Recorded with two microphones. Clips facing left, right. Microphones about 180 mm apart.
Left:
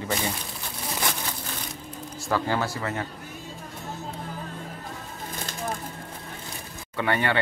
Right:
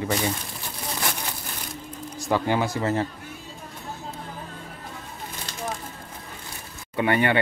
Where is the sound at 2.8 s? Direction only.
30° right (ahead or behind).